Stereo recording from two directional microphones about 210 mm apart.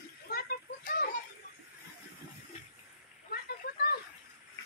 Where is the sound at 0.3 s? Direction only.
45° left (ahead or behind).